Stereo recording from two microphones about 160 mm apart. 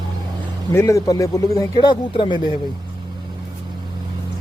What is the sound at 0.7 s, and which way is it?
Speech, 20° left (ahead or behind).